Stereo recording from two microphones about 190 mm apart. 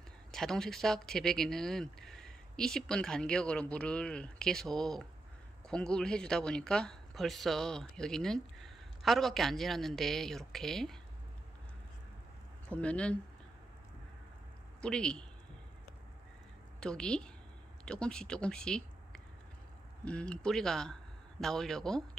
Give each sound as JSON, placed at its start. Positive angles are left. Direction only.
{"t": 0.3, "sound": "speech", "side_deg": 0}
{"t": 12.6, "sound": "speech", "side_deg": 5}
{"t": 14.8, "sound": "speech", "side_deg": 5}
{"t": 16.8, "sound": "a man's voice", "side_deg": 5}